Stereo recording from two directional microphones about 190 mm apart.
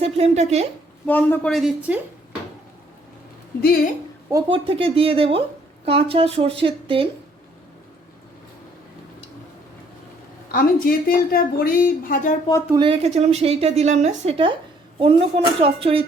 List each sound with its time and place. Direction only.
0.0 s a woman's voice: 35° right (ahead or behind)
1.0 s a woman's voice: 10° left (ahead or behind)
4.3 s speech: 20° right (ahead or behind)
10.5 s speech: 50° left (ahead or behind)
12.6 s a woman's voice: 20° right (ahead or behind)